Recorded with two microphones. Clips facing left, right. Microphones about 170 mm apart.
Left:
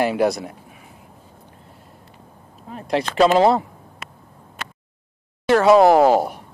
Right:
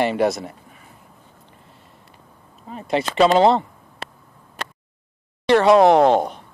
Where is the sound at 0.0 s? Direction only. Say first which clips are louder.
Even; centre (ahead or behind).